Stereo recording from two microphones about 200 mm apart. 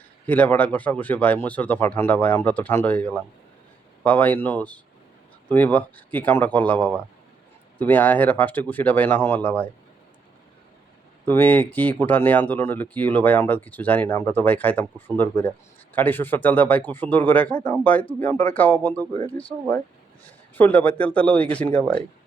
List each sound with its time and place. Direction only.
0.3 s speech: 10° left (ahead or behind)
11.3 s speech: 10° left (ahead or behind)
19.2 s speech: 25° left (ahead or behind)
20.6 s speech: 10° left (ahead or behind)